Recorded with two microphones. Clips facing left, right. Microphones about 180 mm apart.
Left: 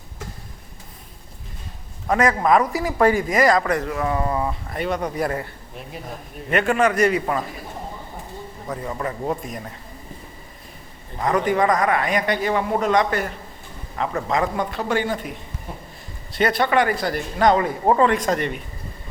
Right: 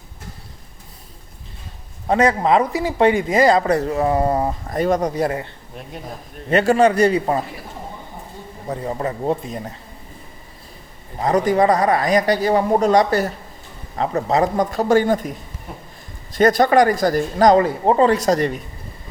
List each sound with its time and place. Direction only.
2.0 s speech: 30° right (ahead or behind)
6.5 s speech: 35° right (ahead or behind)
8.6 s speech: 30° right (ahead or behind)
11.2 s speech: 35° right (ahead or behind)
16.4 s speech: 40° right (ahead or behind)